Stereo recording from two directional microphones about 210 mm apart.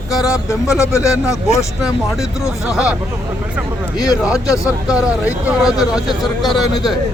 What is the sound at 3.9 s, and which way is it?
Speech, 20° left (ahead or behind).